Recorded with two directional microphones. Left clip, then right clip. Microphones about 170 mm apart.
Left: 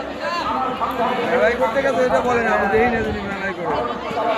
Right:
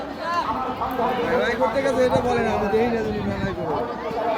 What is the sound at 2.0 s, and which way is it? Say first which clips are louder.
Speech: left 2 dB; 90° right.